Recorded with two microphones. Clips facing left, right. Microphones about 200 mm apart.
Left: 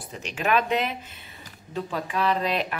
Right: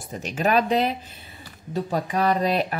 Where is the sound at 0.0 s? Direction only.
45° right (ahead or behind).